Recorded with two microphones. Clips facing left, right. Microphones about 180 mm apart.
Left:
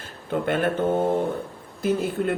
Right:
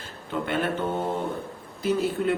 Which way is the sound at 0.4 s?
50° left (ahead or behind).